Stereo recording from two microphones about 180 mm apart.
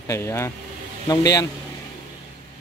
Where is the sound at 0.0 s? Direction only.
15° left (ahead or behind).